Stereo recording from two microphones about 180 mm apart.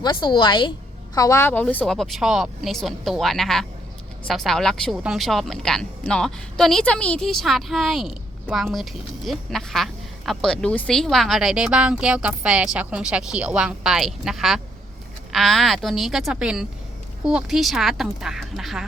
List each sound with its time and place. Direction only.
0.0 s a woman's voice: 25° left (ahead or behind); by 18.9 s centre (ahead or behind)